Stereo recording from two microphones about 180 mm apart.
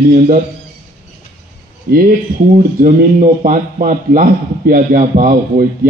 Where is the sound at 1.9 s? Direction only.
55° right (ahead or behind).